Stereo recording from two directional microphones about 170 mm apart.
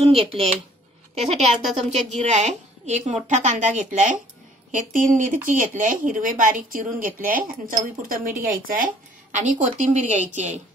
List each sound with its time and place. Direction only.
1.1 s a woman's voice: 40° right (ahead or behind)